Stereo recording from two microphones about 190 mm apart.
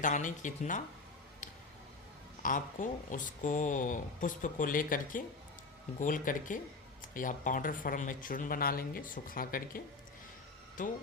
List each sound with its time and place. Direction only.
0.0 s speech: 40° left (ahead or behind)
2.4 s speech: 45° left (ahead or behind)